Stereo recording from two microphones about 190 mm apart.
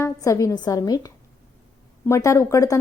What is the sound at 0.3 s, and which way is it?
A woman's voice, 15° left (ahead or behind).